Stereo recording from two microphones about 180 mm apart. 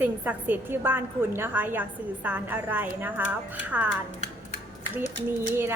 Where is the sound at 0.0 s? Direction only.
10° right (ahead or behind).